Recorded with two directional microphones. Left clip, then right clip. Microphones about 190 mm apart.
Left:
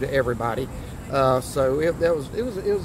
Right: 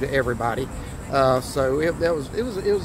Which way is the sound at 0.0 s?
15° left (ahead or behind).